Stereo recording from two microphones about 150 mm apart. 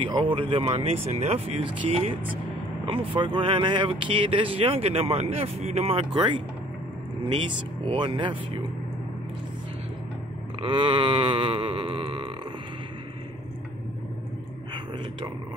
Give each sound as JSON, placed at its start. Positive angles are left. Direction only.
{"t": 0.1, "sound": "speech", "side_deg": -35}
{"t": 3.2, "sound": "speech", "side_deg": -35}
{"t": 6.1, "sound": "speech", "side_deg": -35}
{"t": 10.6, "sound": "speech", "side_deg": -35}